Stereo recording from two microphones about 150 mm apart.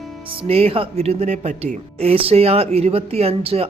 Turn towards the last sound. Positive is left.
turn(degrees=-40)  # may be behind; listen again after turning